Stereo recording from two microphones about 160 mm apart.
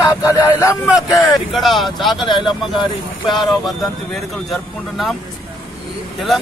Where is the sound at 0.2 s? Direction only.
20° left (ahead or behind).